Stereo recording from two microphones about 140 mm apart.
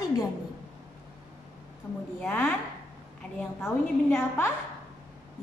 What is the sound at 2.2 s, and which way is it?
Speech, 10° left (ahead or behind).